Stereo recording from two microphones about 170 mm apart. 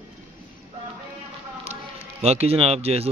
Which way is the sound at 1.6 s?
40° right (ahead or behind).